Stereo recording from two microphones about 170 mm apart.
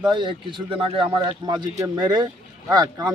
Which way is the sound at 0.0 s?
25° right (ahead or behind).